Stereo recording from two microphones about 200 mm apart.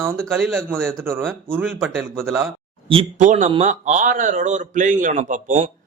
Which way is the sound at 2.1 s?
10° right (ahead or behind).